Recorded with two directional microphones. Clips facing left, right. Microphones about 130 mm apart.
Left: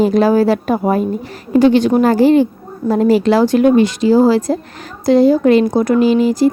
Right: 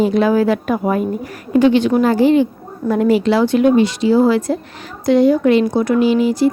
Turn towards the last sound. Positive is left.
turn(degrees=40)  # may be behind; listen again after turning